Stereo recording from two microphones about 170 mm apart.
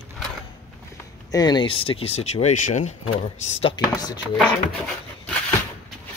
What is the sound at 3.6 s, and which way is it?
Speech, 30° left (ahead or behind).